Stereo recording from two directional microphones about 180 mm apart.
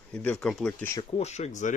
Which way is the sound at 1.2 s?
40° left (ahead or behind).